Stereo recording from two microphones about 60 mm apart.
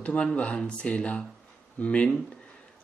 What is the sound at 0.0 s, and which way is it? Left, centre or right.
Speech, centre.